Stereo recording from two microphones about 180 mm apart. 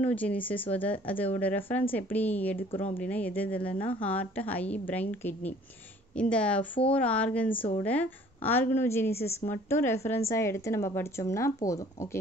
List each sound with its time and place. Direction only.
0.0 s a woman's voice: 10° left (ahead or behind)
2.7 s speech: 30° left (ahead or behind)
3.0 s a woman's voice: 10° left (ahead or behind)
7.5 s speech: 30° left (ahead or behind)
7.8 s a woman's voice: 10° left (ahead or behind)